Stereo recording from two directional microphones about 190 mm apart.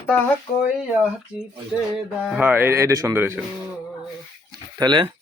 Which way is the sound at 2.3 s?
10° right (ahead or behind).